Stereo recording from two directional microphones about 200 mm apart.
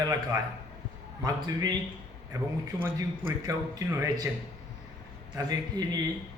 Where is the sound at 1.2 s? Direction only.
20° right (ahead or behind).